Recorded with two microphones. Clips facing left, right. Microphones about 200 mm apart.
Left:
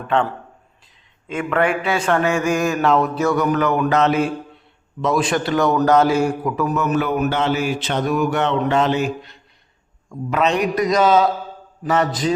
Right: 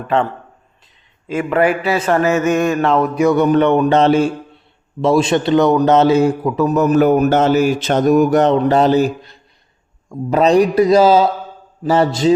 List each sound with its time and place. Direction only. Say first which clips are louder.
1.3 s a man's voice: right 4 dB; 5° right (ahead or behind)
3.3 s a man's voice: right 7 dB; 30° right (ahead or behind)
6.7 s a sound: right 10 dB; 40° right (ahead or behind)
11.8 s a man's voice: right 5 dB; 30° right (ahead or behind)